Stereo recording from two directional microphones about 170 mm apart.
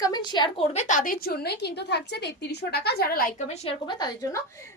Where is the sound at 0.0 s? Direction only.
25° left (ahead or behind).